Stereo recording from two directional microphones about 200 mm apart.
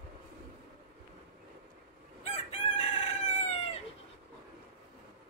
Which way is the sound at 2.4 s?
35° left (ahead or behind).